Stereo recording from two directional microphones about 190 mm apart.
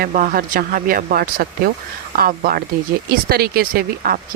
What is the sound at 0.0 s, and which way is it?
Speech, 45° right (ahead or behind).